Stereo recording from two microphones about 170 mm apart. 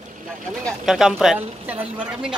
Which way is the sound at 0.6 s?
Centre (ahead or behind).